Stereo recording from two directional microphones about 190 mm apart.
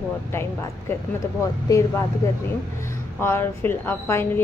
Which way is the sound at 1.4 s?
15° left (ahead or behind).